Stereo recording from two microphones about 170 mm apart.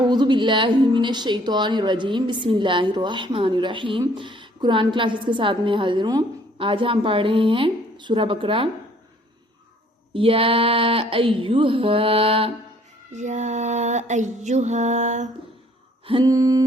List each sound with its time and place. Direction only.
0.1 s a woman's voice: 25° right (ahead or behind)
10.2 s speech: 35° right (ahead or behind)
13.1 s music: 45° right (ahead or behind)
16.0 s a sound: 30° right (ahead or behind)
16.3 s a woman's voice: 20° right (ahead or behind)